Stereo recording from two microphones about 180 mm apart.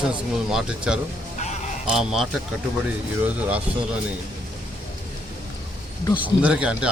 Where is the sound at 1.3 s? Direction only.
40° left (ahead or behind).